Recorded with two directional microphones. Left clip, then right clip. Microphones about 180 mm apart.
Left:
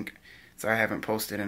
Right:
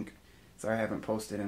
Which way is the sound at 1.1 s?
20° left (ahead or behind).